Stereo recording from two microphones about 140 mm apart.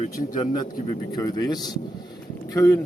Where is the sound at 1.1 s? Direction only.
25° left (ahead or behind).